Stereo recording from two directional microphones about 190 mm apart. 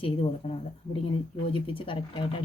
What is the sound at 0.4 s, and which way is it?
Speech, 30° left (ahead or behind).